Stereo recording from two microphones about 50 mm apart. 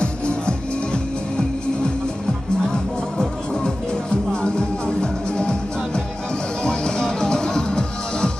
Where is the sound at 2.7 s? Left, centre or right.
Centre.